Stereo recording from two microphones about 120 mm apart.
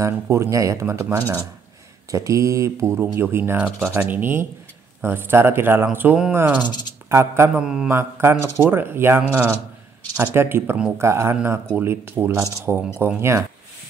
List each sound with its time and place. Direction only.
0.0 s speech: 25° right (ahead or behind)
6.6 s speech: 35° left (ahead or behind)
7.1 s speech: 20° right (ahead or behind)
7.5 s mantra: 5° right (ahead or behind)
7.9 s speech: 20° right (ahead or behind)